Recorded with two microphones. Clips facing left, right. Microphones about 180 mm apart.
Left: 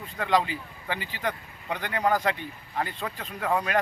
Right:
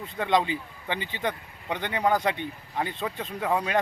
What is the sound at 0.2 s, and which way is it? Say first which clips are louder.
Speech: right 1 dB; 20° right (ahead or behind).